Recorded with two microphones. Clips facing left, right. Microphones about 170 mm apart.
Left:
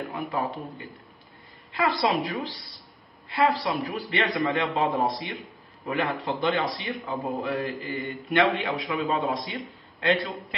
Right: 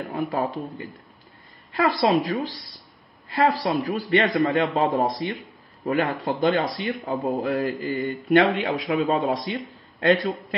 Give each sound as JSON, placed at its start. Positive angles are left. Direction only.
{"t": 0.0, "sound": "speech", "side_deg": -40}
{"t": 1.8, "sound": "a man's voice", "side_deg": -40}